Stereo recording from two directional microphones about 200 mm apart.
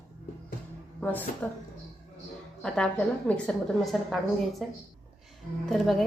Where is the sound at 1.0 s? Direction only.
10° left (ahead or behind).